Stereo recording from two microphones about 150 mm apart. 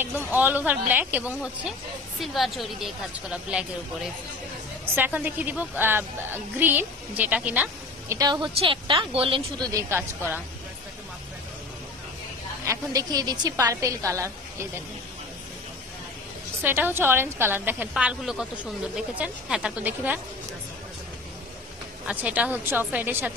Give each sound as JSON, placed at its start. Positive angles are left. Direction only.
{"t": 0.3, "sound": "a woman's voice", "side_deg": -10}
{"t": 8.2, "sound": "a woman's voice", "side_deg": -30}
{"t": 9.7, "sound": "a woman's voice", "side_deg": -20}
{"t": 12.6, "sound": "a woman's voice", "side_deg": -25}
{"t": 16.6, "sound": "a woman's voice", "side_deg": -15}
{"t": 22.0, "sound": "a woman's voice", "side_deg": -10}